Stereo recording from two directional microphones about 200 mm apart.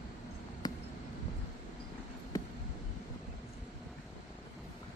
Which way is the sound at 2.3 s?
15° left (ahead or behind).